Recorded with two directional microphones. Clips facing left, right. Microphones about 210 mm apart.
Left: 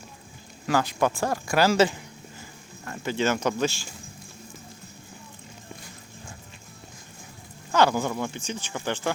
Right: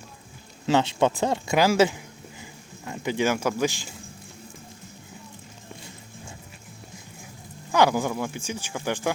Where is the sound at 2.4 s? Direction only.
15° right (ahead or behind).